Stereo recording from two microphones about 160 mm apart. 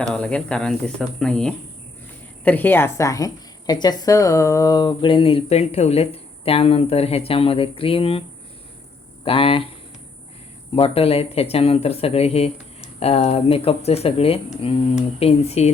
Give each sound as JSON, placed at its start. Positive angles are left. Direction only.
{"t": 0.1, "sound": "a woman's voice", "side_deg": 5}
{"t": 9.2, "sound": "a woman's voice", "side_deg": 35}
{"t": 10.8, "sound": "a woman's voice", "side_deg": 35}